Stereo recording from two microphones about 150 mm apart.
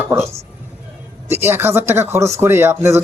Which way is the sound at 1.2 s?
15° right (ahead or behind).